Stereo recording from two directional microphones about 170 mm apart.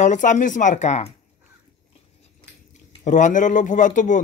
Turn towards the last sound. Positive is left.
turn(degrees=50)  # may be behind; listen again after turning